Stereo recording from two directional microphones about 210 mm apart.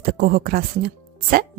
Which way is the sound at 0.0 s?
45° right (ahead or behind).